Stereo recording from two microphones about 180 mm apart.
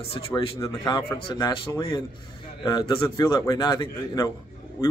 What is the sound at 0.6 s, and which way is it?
A man's voice, 20° left (ahead or behind).